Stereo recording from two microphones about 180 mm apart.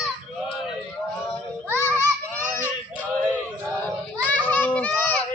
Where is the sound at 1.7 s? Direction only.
10° left (ahead or behind).